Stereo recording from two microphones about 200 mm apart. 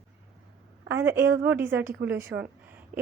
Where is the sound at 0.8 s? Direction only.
10° right (ahead or behind).